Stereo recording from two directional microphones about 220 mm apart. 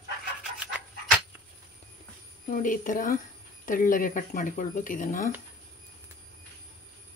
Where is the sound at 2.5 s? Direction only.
35° left (ahead or behind).